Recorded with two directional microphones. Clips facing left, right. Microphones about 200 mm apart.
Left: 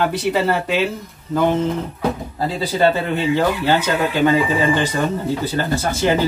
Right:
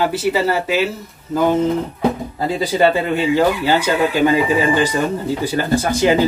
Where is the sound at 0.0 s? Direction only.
5° right (ahead or behind).